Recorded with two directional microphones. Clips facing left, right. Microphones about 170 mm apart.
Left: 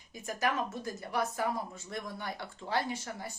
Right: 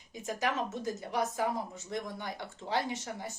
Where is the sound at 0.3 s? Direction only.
20° right (ahead or behind).